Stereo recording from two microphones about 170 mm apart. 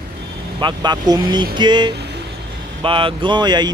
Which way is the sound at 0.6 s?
25° right (ahead or behind).